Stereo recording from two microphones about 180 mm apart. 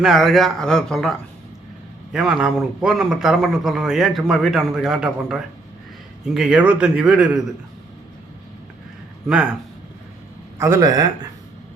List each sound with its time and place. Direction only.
0.0 s speech: centre (ahead or behind)
2.1 s speech: 5° right (ahead or behind)
9.2 s speech: 5° right (ahead or behind)
10.6 s a man's voice: 20° right (ahead or behind)